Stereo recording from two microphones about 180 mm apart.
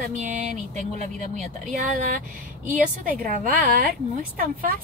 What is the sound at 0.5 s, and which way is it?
A woman's voice, 45° right (ahead or behind).